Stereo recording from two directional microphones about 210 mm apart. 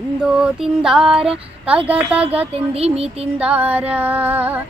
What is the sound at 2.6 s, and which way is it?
Speech, 30° right (ahead or behind).